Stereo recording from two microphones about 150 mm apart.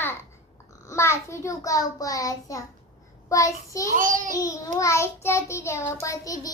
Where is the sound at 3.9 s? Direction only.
60° right (ahead or behind).